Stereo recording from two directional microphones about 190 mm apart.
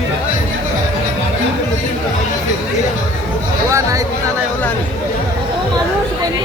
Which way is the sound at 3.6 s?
15° right (ahead or behind).